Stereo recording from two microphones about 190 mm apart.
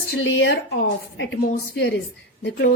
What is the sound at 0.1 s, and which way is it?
A woman's voice, 70° left (ahead or behind).